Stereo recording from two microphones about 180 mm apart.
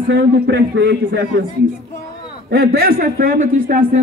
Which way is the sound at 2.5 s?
60° right (ahead or behind).